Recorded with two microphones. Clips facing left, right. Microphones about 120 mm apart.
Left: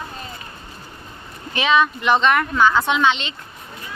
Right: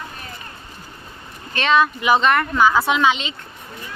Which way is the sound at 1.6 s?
Centre (ahead or behind).